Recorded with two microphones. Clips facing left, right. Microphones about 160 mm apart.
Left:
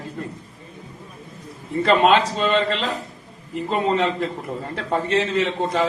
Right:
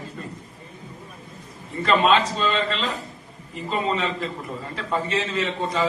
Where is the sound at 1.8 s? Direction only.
65° left (ahead or behind).